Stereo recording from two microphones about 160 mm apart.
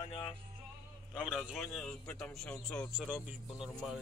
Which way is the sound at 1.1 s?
Centre (ahead or behind).